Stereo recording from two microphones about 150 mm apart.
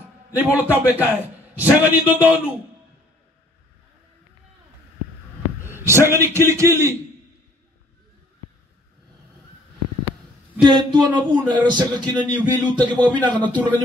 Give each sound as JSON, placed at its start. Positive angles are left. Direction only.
{"t": 0.4, "sound": "a man's voice", "side_deg": -10}
{"t": 5.6, "sound": "a man's voice", "side_deg": -15}
{"t": 10.6, "sound": "speech", "side_deg": -30}
{"t": 13.5, "sound": "a man's voice", "side_deg": 10}